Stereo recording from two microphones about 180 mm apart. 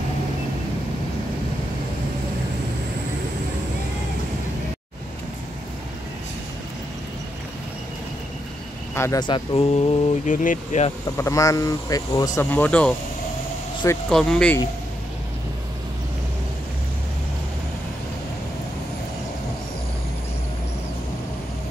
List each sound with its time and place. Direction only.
8.9 s speech: 15° left (ahead or behind); by 9.9 s 30° left (ahead or behind)
10.2 s speech: 45° left (ahead or behind)
11.1 s speech: 15° left (ahead or behind)
12.4 s speech: 10° left (ahead or behind)
14.0 s speech: 5° left (ahead or behind)